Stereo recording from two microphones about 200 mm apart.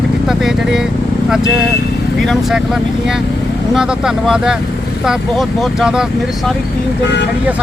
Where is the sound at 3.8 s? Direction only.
5° right (ahead or behind).